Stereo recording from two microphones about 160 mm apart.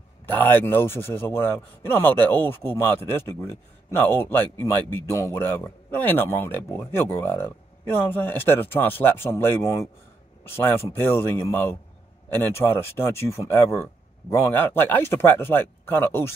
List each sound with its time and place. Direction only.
0.3 s speech: 10° left (ahead or behind)